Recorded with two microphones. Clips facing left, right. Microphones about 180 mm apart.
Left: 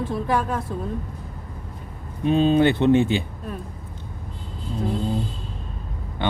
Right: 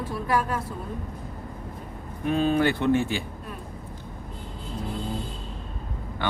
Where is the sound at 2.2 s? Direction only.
20° left (ahead or behind).